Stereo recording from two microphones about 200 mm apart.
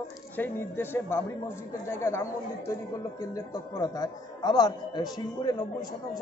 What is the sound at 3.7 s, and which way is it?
A man's voice, 20° left (ahead or behind).